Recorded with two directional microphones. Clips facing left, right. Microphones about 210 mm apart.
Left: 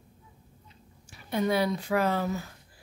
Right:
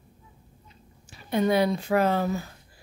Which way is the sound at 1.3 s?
20° right (ahead or behind).